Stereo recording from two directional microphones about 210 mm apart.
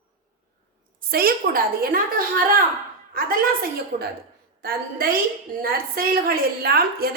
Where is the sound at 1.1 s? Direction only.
45° right (ahead or behind).